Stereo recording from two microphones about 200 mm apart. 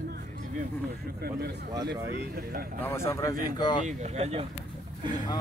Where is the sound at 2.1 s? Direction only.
50° right (ahead or behind).